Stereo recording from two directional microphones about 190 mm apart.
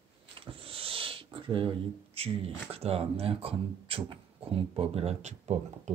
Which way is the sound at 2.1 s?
30° right (ahead or behind).